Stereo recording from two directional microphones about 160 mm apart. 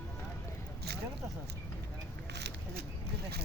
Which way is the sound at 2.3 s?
90° right.